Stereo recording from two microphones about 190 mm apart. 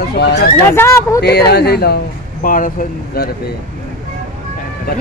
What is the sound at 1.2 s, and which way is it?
Speech, 60° left (ahead or behind).